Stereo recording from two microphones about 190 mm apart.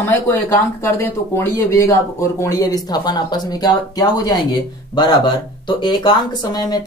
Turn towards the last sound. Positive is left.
turn(degrees=20)  # may be behind; listen again after turning